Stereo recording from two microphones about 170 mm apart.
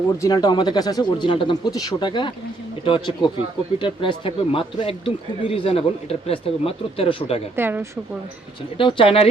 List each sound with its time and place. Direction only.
0.2 s speech: 20° left (ahead or behind)
7.5 s a woman's voice: 15° right (ahead or behind)
8.8 s speech: 30° left (ahead or behind)